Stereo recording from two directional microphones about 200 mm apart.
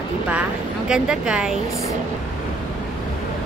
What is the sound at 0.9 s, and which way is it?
Speech, 5° right (ahead or behind).